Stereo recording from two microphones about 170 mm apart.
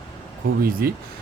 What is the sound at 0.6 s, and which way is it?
Speech, 60° right (ahead or behind).